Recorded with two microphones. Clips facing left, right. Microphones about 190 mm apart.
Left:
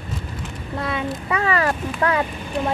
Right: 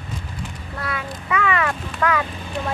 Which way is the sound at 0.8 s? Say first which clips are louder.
Left 3 dB; 30° left (ahead or behind).